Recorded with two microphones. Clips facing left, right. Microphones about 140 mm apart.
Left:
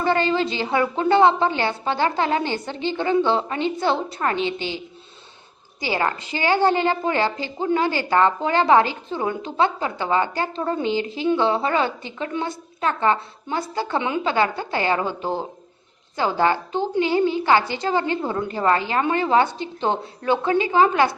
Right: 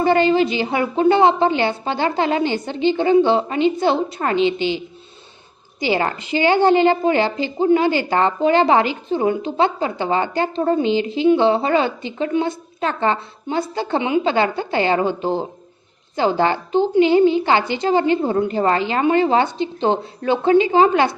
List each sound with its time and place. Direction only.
0.0 s a woman's voice: 15° right (ahead or behind)
5.8 s a woman's voice: 20° right (ahead or behind)